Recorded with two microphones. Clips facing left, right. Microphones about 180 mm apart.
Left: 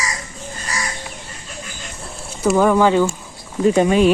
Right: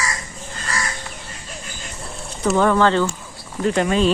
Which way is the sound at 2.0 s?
5° left (ahead or behind).